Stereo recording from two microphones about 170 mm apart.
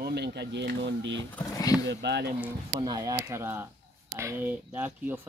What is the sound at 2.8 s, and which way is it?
Speech, 25° right (ahead or behind).